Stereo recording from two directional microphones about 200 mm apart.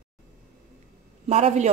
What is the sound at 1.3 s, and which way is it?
Speech, 35° right (ahead or behind).